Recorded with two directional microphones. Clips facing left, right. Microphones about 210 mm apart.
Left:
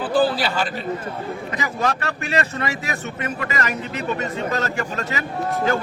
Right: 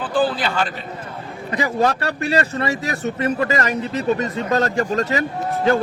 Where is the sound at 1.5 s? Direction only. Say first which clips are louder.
Right 6 dB; 35° right (ahead or behind).